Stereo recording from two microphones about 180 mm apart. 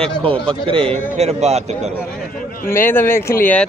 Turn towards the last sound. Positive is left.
turn(degrees=10)  # may be behind; listen again after turning